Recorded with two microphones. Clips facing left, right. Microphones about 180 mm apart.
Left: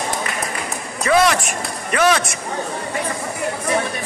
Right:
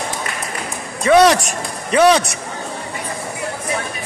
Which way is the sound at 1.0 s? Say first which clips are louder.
Right 5 dB; 35° right (ahead or behind).